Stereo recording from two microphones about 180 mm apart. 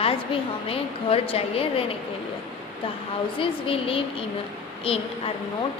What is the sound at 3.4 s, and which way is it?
Speech, 30° left (ahead or behind).